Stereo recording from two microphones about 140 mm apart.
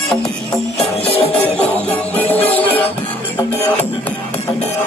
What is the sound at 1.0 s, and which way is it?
Music, 45° left (ahead or behind).